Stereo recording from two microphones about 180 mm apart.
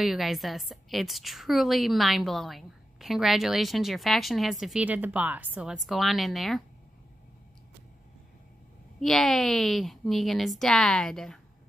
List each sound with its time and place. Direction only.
0.0 s a woman's voice: centre (ahead or behind)
9.0 s a woman's voice: centre (ahead or behind)